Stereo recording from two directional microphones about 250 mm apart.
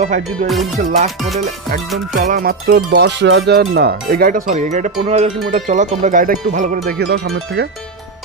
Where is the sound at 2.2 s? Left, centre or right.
Right.